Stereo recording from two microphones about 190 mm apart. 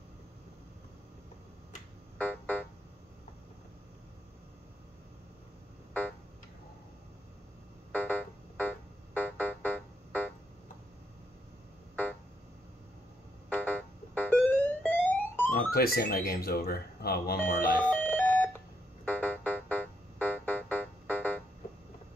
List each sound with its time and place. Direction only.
2.1 s music: 10° left (ahead or behind)
7.9 s keyboard: 10° left (ahead or behind)
11.9 s a sound: 10° left (ahead or behind)
13.5 s music: 10° left (ahead or behind)
15.5 s speech: 55° left (ahead or behind)
17.4 s alarm clock: 10° left (ahead or behind)
19.0 s keyboard: 10° left (ahead or behind)